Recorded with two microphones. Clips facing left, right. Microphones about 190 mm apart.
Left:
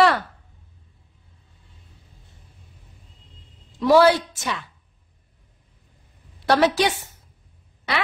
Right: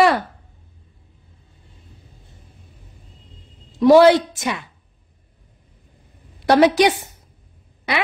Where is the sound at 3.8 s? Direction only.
20° right (ahead or behind).